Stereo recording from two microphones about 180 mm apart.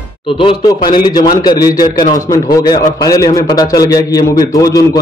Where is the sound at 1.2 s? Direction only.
55° left (ahead or behind).